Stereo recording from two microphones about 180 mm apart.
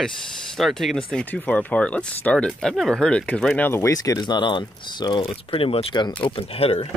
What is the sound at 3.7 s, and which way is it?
Speech, 15° left (ahead or behind).